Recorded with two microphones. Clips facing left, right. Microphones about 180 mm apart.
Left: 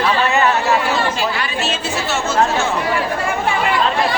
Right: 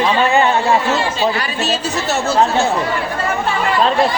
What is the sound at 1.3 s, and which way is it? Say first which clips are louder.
Speech: right 2 dB; 40° right (ahead or behind).